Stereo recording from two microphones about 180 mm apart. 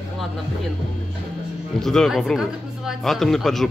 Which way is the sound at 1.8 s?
Centre (ahead or behind).